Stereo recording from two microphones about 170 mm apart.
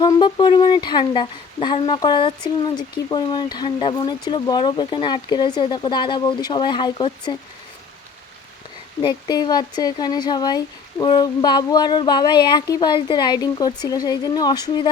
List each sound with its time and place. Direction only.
0.0 s speech: 25° left (ahead or behind)
9.0 s speech: 25° left (ahead or behind)